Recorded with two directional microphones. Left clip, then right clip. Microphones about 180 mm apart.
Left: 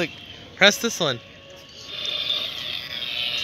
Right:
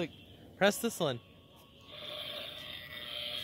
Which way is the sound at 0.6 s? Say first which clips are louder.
Left 12 dB; 15° right (ahead or behind).